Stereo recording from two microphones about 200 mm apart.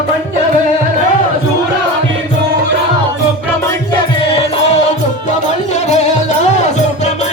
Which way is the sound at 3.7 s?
25° left (ahead or behind).